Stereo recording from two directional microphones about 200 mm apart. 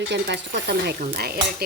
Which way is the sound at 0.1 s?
60° right (ahead or behind).